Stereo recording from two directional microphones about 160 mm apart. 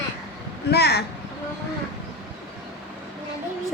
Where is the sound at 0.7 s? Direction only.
90° left.